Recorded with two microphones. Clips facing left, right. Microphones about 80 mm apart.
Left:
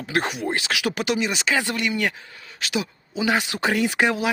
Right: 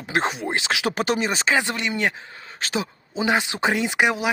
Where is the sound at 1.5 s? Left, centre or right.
Right.